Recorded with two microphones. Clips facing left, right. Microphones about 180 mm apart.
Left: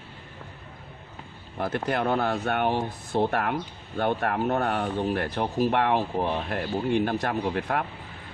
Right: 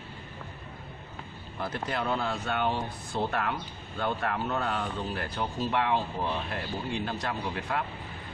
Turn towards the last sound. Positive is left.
turn(degrees=60)  # may be behind; listen again after turning